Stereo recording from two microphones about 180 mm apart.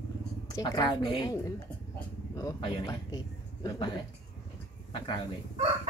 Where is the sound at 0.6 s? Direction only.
25° left (ahead or behind).